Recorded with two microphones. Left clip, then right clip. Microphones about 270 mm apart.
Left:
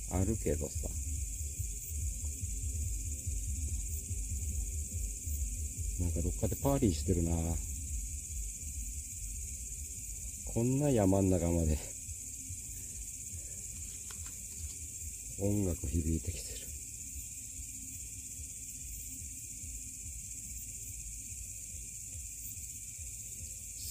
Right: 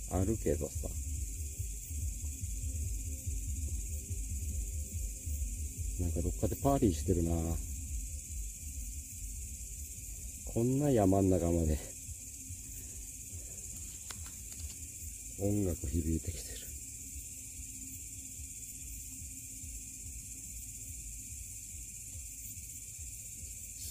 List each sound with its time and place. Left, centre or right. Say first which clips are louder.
0.1 s speech: right 2 dB; centre
5.9 s speech: right 1 dB; centre
10.5 s speech: right 1 dB; centre
15.3 s speech: even; centre